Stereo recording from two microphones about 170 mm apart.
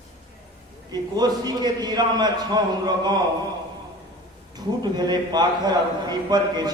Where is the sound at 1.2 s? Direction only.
25° right (ahead or behind).